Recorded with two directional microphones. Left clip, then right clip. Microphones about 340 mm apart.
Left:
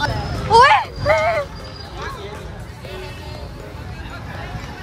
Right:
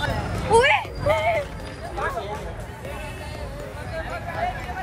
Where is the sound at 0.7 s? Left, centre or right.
Left.